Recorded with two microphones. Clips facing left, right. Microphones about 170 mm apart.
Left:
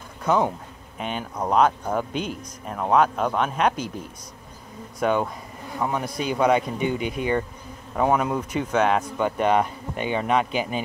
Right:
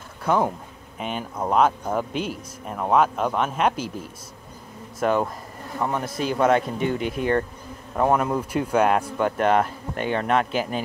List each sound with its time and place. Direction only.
0.2 s speech: 5° right (ahead or behind)
5.0 s speech: centre (ahead or behind)